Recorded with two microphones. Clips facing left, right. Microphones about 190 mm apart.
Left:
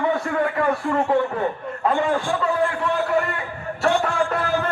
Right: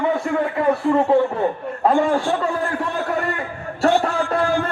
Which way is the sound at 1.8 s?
40° right (ahead or behind).